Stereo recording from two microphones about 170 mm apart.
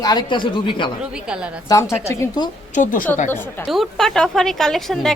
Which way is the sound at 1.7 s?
15° left (ahead or behind).